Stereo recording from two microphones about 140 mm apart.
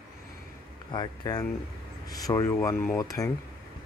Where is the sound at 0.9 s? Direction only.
30° left (ahead or behind).